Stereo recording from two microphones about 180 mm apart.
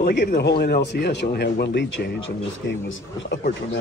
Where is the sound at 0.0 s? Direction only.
60° left (ahead or behind).